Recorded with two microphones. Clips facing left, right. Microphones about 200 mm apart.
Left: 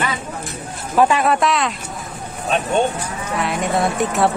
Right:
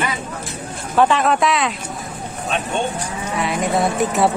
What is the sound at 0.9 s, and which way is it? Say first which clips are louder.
Speech: even; 10° left (ahead or behind).